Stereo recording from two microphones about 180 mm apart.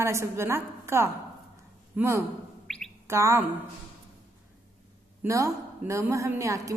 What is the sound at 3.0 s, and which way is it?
Speech, 15° right (ahead or behind).